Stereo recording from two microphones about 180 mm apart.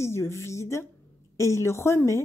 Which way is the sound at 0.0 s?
15° left (ahead or behind).